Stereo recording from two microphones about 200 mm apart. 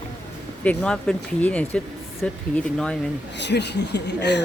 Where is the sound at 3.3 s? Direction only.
60° left (ahead or behind).